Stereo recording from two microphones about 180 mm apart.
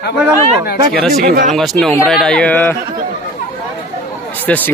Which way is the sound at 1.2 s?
50° right (ahead or behind).